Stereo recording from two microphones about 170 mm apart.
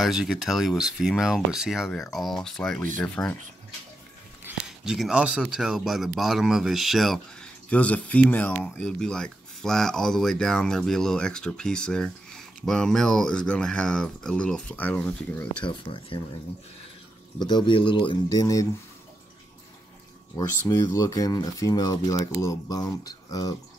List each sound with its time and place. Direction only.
0.0 s speech: centre (ahead or behind)
4.5 s speech: 5° right (ahead or behind)
15.6 s speech: 30° left (ahead or behind)
17.4 s speech: 25° left (ahead or behind)
20.3 s speech: 20° left (ahead or behind)